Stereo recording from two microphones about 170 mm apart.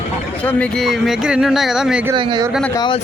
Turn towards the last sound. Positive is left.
turn(degrees=30)  # may be behind; listen again after turning